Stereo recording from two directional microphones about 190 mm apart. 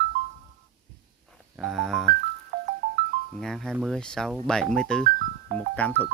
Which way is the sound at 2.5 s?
55° right (ahead or behind).